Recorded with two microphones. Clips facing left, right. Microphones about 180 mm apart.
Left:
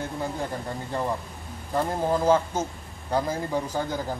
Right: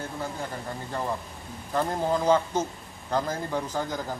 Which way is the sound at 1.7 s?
10° left (ahead or behind).